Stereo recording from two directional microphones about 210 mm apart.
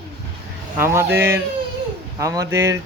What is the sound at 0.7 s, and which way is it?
Speech, 10° right (ahead or behind).